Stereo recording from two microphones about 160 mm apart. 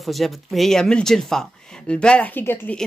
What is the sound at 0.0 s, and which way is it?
Speech, centre (ahead or behind).